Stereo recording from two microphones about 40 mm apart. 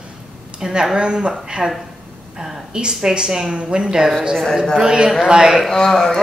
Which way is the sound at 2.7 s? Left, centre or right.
Right.